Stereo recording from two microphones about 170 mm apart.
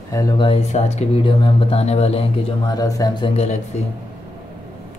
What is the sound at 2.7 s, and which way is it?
Speech, 20° left (ahead or behind).